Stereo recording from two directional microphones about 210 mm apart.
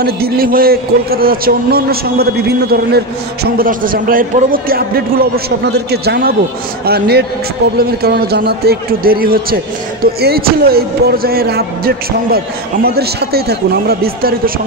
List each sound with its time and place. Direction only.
0.0 s a man's voice: 45° right (ahead or behind)